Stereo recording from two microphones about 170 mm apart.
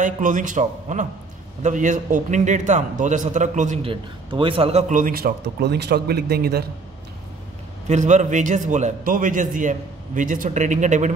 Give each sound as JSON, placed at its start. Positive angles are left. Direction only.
{"t": 0.0, "sound": "a man's voice", "side_deg": -50}
{"t": 3.8, "sound": "a man's voice", "side_deg": -30}
{"t": 7.9, "sound": "a man's voice", "side_deg": -45}